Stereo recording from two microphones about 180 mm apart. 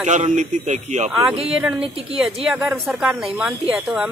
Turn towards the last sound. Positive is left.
turn(degrees=-5)  # may be behind; listen again after turning